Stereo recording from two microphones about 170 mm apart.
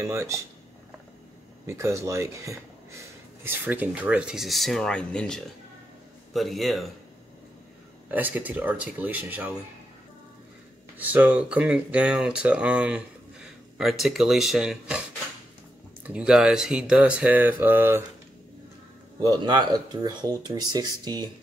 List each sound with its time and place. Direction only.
0.0 s speech: 15° right (ahead or behind)
1.7 s speech: 15° right (ahead or behind); by 6.9 s centre (ahead or behind)
8.1 s speech: 10° right (ahead or behind)
11.0 s speech: 10° right (ahead or behind)
19.2 s speech: 25° right (ahead or behind)